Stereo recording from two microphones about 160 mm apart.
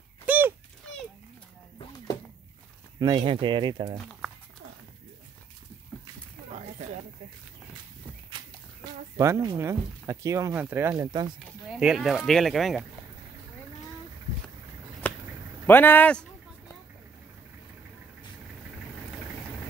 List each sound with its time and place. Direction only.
0.3 s a sound: 10° right (ahead or behind)
3.0 s speech: 25° right (ahead or behind)
9.1 s speech: 15° right (ahead or behind)
11.8 s speech: 5° right (ahead or behind)
15.0 s a sound: 10° left (ahead or behind)
15.6 s speech: 10° left (ahead or behind)